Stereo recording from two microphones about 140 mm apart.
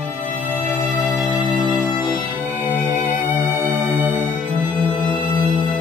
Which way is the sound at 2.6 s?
10° right (ahead or behind).